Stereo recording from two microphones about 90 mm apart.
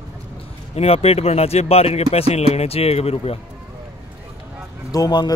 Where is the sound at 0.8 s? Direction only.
90° left.